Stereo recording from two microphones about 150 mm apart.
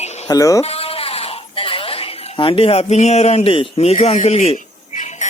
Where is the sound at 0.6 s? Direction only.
40° left (ahead or behind).